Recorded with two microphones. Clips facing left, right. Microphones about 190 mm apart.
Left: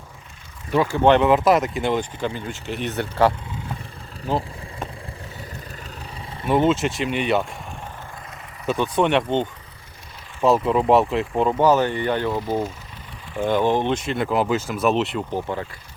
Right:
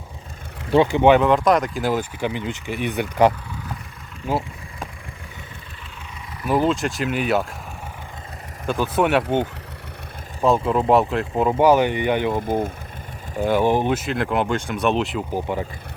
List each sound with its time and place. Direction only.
0.7 s speech: 25° right (ahead or behind)
1.0 s speech: 5° right (ahead or behind)
6.5 s speech: centre (ahead or behind)
8.6 s speech: centre (ahead or behind)
10.4 s speech: centre (ahead or behind)